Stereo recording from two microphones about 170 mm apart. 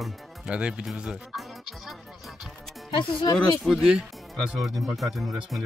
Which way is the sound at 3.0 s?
30° left (ahead or behind).